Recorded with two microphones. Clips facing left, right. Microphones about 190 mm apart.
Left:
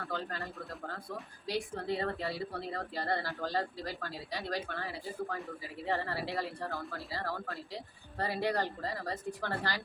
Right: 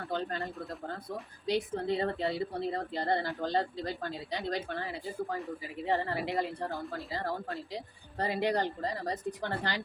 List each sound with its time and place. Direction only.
0.1 s a woman's voice: 20° right (ahead or behind)
1.5 s a woman's voice: 20° right (ahead or behind)
5.9 s a woman's voice: 20° right (ahead or behind)